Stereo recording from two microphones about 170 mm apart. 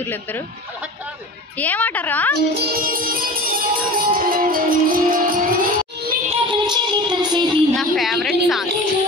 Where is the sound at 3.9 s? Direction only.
55° right (ahead or behind).